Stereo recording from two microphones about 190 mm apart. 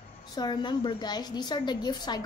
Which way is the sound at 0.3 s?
20° left (ahead or behind).